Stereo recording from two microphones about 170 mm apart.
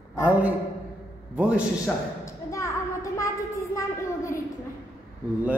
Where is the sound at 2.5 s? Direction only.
20° left (ahead or behind).